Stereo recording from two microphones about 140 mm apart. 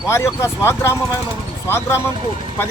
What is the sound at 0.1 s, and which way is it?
A man's voice, 20° left (ahead or behind).